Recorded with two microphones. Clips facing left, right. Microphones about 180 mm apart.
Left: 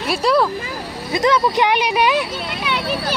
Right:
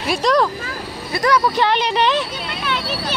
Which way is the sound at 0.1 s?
5° left (ahead or behind).